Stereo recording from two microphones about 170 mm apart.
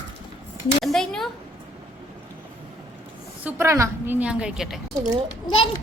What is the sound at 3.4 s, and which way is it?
A woman's voice, 15° right (ahead or behind).